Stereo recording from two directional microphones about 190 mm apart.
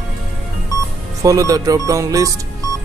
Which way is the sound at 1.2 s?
15° right (ahead or behind).